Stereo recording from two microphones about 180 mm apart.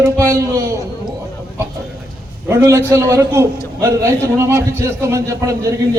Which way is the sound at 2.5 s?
15° right (ahead or behind).